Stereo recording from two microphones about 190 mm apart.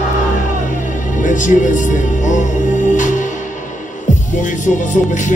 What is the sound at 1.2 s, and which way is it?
Music, 45° left (ahead or behind).